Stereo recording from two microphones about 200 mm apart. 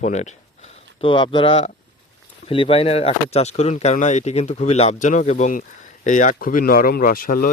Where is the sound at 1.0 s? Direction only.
25° left (ahead or behind).